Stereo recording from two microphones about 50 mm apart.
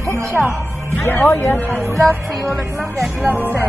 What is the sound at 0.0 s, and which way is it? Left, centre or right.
Speech, right.